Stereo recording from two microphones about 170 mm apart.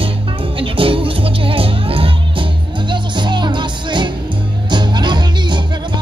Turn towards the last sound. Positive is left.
turn(degrees=-25)  # may be behind; listen again after turning